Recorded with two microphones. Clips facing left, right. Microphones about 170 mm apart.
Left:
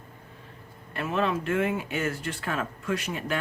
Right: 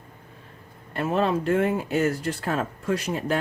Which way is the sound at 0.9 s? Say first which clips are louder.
Right 4 dB; 35° right (ahead or behind).